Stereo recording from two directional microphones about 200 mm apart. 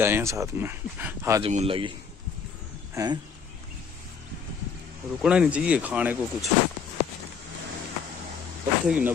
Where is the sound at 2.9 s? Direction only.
20° right (ahead or behind).